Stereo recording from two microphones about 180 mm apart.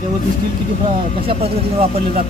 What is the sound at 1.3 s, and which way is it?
Speech, 35° right (ahead or behind).